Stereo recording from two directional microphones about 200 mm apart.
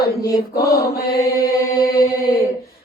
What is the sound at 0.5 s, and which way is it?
Mantra, 50° left (ahead or behind).